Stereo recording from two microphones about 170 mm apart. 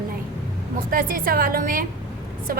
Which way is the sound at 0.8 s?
55° right (ahead or behind).